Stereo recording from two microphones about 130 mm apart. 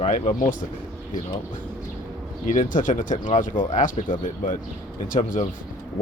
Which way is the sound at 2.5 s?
80° left.